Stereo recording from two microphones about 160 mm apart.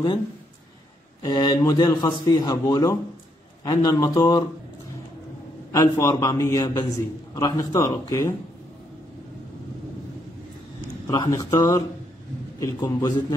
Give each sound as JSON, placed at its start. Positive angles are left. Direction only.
{"t": 1.2, "sound": "a man's voice", "side_deg": 25}
{"t": 5.7, "sound": "a man's voice", "side_deg": 20}
{"t": 11.1, "sound": "a man's voice", "side_deg": 20}